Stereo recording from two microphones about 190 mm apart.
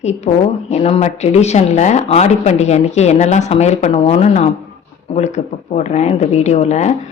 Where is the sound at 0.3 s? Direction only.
35° left (ahead or behind).